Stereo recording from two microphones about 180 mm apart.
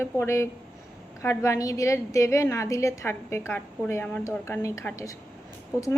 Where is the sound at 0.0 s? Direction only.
15° left (ahead or behind).